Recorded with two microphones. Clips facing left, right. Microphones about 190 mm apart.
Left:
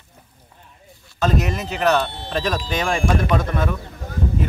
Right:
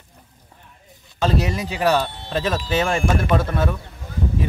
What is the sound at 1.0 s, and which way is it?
Speech, 10° right (ahead or behind).